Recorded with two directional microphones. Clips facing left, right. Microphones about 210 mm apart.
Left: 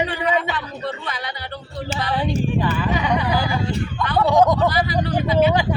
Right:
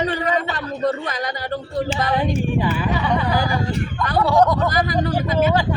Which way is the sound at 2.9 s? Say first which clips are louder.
Even; 15° left (ahead or behind).